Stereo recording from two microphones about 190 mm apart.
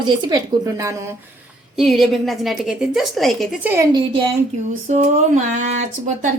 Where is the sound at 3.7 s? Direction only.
15° right (ahead or behind).